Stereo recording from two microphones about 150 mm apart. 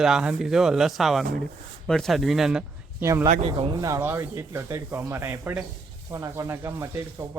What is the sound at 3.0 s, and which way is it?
Speech, 20° right (ahead or behind).